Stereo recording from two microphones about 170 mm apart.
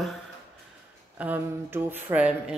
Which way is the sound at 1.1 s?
10° right (ahead or behind).